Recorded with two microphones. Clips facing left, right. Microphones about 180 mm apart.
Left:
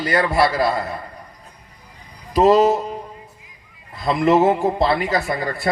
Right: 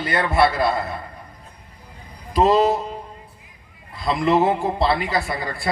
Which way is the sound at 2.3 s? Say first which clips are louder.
Left 3 dB; 40° left (ahead or behind).